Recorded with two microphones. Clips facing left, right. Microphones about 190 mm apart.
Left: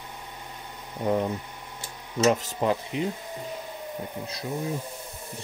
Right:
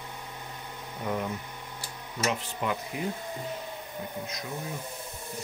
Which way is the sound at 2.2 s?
40° left (ahead or behind).